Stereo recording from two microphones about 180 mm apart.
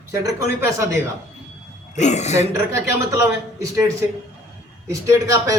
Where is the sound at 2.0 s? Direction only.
40° left (ahead or behind).